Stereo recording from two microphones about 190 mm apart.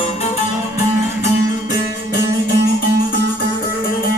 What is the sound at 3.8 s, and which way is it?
Music, 50° left (ahead or behind).